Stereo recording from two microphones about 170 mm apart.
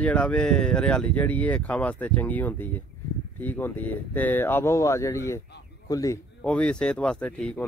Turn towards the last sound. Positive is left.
turn(degrees=5)  # may be behind; listen again after turning